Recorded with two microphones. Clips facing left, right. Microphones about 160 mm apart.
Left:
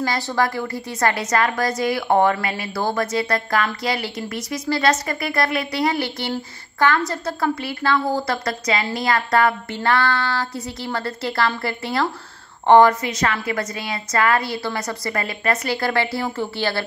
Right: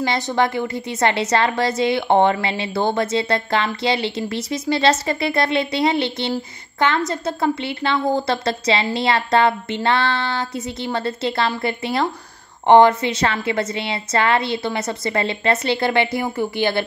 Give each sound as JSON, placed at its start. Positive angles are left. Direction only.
{"t": 0.0, "sound": "a woman's voice", "side_deg": -20}